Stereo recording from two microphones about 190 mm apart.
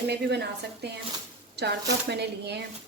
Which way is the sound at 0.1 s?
60° right (ahead or behind).